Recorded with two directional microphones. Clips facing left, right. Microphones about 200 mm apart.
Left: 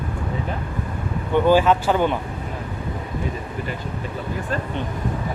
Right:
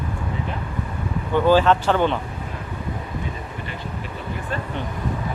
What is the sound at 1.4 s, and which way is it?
Speech, 10° left (ahead or behind).